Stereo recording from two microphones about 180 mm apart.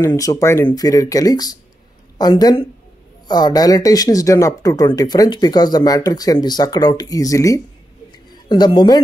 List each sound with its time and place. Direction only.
0.0 s speech: 15° left (ahead or behind)